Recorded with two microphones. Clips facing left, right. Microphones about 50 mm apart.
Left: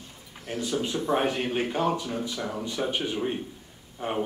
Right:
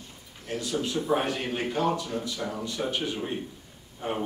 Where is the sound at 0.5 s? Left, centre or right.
Left.